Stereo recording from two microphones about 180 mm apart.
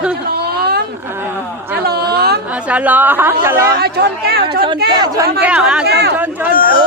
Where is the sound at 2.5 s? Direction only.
5° right (ahead or behind).